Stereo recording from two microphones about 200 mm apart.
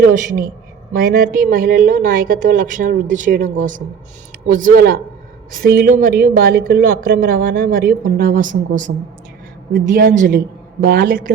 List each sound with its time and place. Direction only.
0.1 s a man's voice: 40° right (ahead or behind)